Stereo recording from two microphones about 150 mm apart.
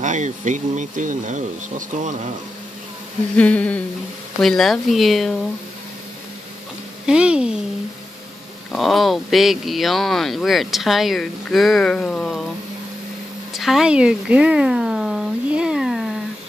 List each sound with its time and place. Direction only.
0.0 s speech: 55° right (ahead or behind)
3.3 s humming: 10° left (ahead or behind)
4.4 s speech: centre (ahead or behind)
7.1 s speech: 5° right (ahead or behind)
8.7 s speech: centre (ahead or behind)
13.5 s speech: centre (ahead or behind)